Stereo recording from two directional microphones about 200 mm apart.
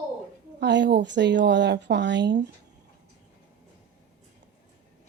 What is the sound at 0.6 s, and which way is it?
Speech, 60° right (ahead or behind).